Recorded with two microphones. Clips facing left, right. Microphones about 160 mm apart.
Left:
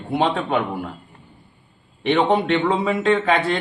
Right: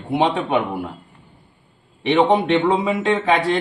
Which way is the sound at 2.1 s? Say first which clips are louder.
Right 2 dB; 20° right (ahead or behind).